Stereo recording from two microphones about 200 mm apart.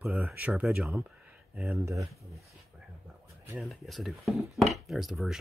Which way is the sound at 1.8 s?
15° right (ahead or behind).